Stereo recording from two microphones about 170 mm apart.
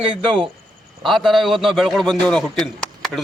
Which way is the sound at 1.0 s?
Centre (ahead or behind).